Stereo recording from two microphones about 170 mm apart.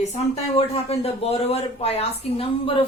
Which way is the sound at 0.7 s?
35° left (ahead or behind).